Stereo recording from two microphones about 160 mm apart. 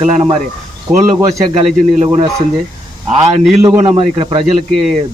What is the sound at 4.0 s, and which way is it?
Speech, 35° right (ahead or behind).